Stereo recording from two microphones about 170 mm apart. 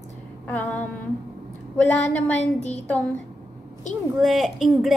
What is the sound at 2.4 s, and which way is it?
Speech, 40° left (ahead or behind).